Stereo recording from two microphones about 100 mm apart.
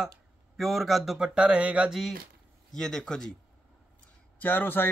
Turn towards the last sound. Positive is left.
turn(degrees=20)  # may be behind; listen again after turning